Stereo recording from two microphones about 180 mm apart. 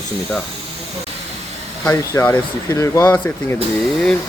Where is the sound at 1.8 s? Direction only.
10° left (ahead or behind).